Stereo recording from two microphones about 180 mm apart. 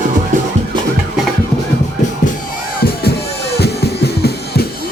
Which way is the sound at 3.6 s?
65° left (ahead or behind).